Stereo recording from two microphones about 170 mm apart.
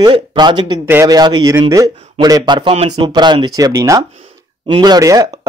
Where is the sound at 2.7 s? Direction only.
40° right (ahead or behind).